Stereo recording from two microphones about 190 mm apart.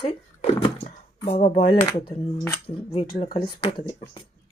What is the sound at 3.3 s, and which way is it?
Speech, 30° left (ahead or behind).